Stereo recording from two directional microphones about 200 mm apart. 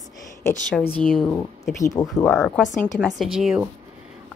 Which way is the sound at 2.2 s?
5° left (ahead or behind).